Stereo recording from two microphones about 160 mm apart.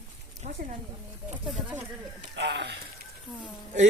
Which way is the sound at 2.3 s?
90° right.